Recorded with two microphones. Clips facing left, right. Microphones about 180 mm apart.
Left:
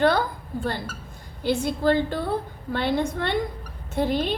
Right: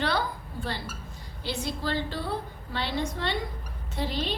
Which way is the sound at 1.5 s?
50° left (ahead or behind).